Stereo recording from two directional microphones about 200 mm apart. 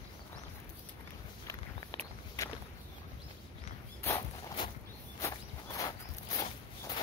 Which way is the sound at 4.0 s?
15° left (ahead or behind).